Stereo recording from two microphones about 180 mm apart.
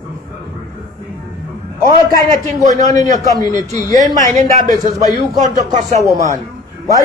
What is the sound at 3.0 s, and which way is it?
A man's voice, 20° left (ahead or behind).